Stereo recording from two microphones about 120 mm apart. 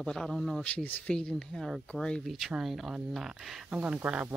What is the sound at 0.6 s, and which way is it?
Speech, 10° left (ahead or behind).